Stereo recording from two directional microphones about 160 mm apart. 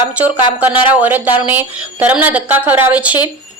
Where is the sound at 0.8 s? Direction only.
10° right (ahead or behind).